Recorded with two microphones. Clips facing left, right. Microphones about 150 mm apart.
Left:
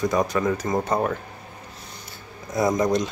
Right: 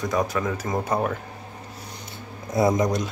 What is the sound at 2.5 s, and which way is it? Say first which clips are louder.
Speech: right 1 dB; 25° right (ahead or behind).